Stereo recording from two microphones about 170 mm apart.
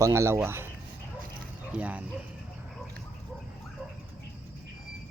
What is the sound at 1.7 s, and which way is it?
Speech, 5° right (ahead or behind).